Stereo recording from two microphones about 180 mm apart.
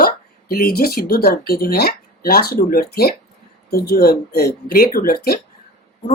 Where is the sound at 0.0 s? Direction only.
55° left (ahead or behind).